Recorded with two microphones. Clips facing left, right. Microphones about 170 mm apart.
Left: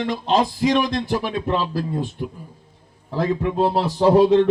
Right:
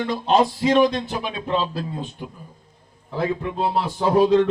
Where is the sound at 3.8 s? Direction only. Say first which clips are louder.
Left 3 dB; 70° left (ahead or behind).